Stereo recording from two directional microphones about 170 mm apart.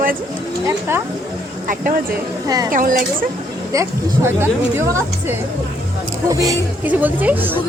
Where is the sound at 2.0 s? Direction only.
20° right (ahead or behind).